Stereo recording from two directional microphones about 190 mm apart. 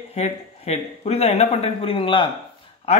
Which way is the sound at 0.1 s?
35° left (ahead or behind).